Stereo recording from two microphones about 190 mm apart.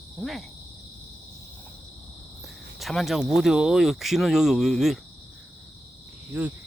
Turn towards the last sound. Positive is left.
turn(degrees=-10)  # may be behind; listen again after turning